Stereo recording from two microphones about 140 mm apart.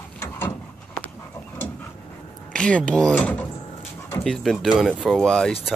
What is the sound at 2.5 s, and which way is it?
Speech, 5° left (ahead or behind).